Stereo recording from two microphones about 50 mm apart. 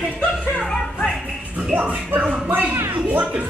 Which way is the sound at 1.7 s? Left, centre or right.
Right.